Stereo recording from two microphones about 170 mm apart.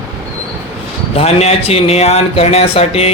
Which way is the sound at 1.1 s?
40° left (ahead or behind).